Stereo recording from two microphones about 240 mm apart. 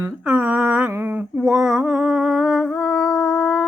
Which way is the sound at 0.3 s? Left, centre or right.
Centre.